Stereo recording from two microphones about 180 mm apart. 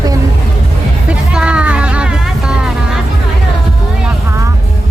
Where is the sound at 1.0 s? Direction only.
5° right (ahead or behind).